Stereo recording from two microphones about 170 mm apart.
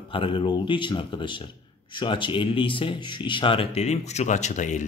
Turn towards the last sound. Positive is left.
turn(degrees=45)  # may be behind; listen again after turning